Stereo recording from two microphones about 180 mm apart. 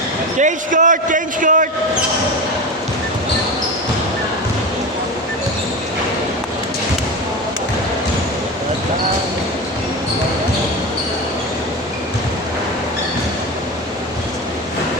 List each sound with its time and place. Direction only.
0.3 s a man's voice: 45° right (ahead or behind)